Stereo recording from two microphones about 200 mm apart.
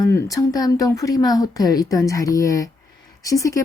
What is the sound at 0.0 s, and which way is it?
A woman's voice, 15° left (ahead or behind).